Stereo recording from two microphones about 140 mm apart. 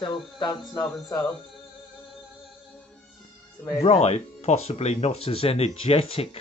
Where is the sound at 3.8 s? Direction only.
50° left (ahead or behind).